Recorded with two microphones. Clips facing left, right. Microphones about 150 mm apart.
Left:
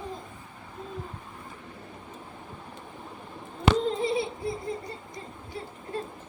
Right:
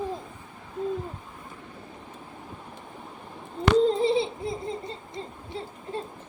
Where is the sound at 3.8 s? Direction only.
30° right (ahead or behind).